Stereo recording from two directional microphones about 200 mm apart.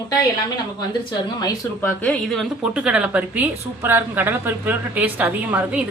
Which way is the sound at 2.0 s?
Centre (ahead or behind).